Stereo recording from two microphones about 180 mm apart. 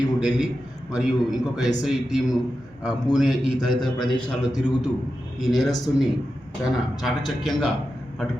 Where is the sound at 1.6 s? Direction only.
20° left (ahead or behind).